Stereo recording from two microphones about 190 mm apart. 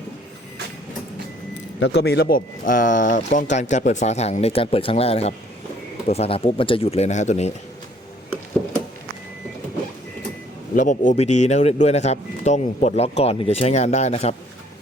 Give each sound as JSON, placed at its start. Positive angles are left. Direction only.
{"t": 1.8, "sound": "speech", "side_deg": 60}
{"t": 10.8, "sound": "speech", "side_deg": 40}